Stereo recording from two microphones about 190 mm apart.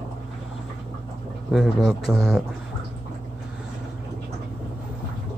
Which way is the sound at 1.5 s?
Centre (ahead or behind).